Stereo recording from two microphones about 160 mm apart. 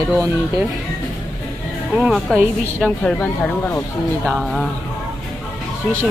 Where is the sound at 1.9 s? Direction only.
5° right (ahead or behind).